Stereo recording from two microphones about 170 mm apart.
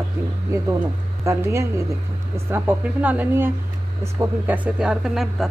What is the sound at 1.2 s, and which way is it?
Speech, 15° right (ahead or behind).